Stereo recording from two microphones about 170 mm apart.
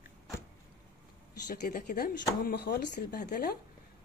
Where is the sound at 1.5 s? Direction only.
55° left (ahead or behind); by 2.8 s 70° left (ahead or behind).